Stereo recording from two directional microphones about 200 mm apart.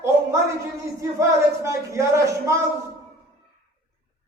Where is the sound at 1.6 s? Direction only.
15° right (ahead or behind).